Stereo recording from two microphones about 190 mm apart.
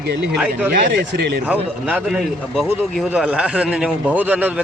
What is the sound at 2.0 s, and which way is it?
A man's voice, centre (ahead or behind).